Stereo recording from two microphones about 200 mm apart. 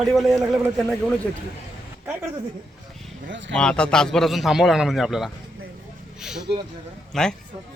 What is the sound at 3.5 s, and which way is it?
A man's voice, 5° left (ahead or behind).